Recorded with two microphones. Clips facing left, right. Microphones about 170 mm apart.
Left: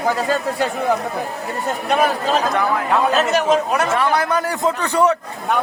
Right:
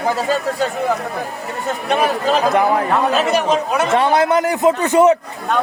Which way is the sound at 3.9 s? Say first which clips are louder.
Right 7 dB; 25° right (ahead or behind).